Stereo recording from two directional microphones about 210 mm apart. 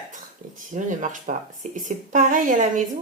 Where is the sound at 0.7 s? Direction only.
35° right (ahead or behind).